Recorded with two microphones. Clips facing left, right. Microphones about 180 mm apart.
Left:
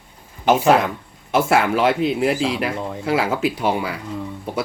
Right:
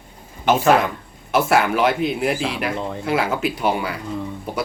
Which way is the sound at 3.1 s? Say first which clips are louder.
Left 2 dB; 30° left (ahead or behind).